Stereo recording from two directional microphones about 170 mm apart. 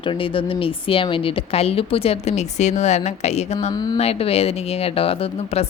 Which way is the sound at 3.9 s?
35° left (ahead or behind).